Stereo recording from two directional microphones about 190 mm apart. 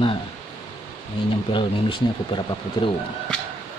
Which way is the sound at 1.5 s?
25° left (ahead or behind).